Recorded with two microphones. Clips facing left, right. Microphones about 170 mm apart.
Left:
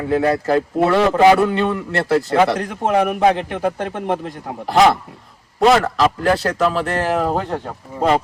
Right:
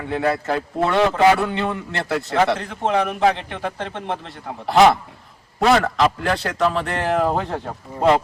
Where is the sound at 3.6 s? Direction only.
45° left (ahead or behind).